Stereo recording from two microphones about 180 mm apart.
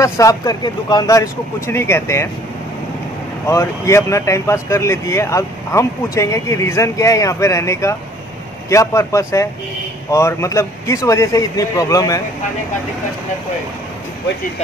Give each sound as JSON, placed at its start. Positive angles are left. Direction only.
{"t": 0.0, "sound": "speech", "side_deg": 20}
{"t": 3.4, "sound": "speech", "side_deg": 15}